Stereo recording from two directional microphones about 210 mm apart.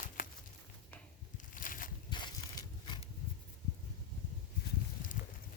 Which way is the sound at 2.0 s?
20° left (ahead or behind).